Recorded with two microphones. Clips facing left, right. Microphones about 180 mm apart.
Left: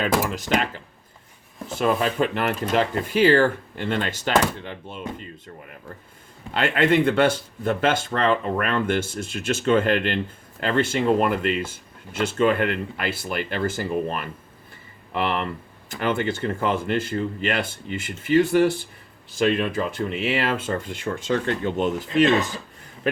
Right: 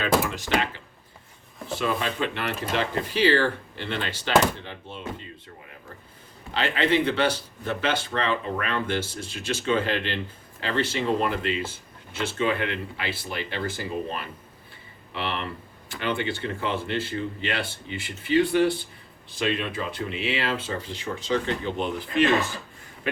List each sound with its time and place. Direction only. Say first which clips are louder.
0.0 s speech: left 1 dB; 45° left (ahead or behind)
1.8 s speech: left 6 dB; 45° left (ahead or behind)
6.5 s speech: left 4 dB; 50° left (ahead or behind)